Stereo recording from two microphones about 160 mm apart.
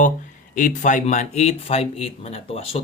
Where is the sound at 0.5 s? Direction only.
50° left (ahead or behind).